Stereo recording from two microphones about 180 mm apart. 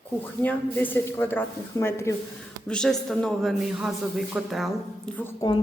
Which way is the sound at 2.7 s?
5° left (ahead or behind).